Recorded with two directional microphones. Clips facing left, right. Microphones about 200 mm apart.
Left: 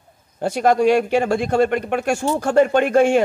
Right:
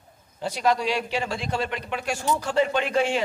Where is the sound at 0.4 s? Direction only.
50° left (ahead or behind).